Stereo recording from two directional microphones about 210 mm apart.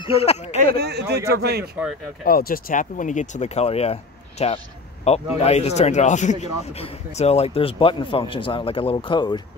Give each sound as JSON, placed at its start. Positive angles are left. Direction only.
{"t": 0.0, "sound": "speech", "side_deg": 25}
{"t": 0.7, "sound": "speech", "side_deg": -50}
{"t": 2.2, "sound": "speech", "side_deg": 45}